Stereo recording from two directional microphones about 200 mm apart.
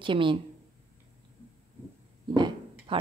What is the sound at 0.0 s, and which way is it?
Speech, 25° right (ahead or behind).